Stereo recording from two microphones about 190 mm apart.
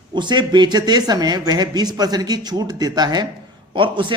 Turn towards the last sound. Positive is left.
turn(degrees=-25)  # may be behind; listen again after turning